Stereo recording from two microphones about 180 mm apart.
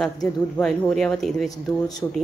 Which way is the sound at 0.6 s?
5° left (ahead or behind).